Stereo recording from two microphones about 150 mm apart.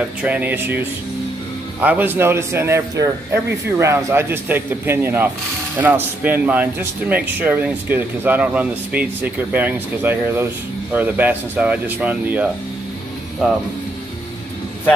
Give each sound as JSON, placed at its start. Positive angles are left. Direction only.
{"t": 0.2, "sound": "speech", "side_deg": -10}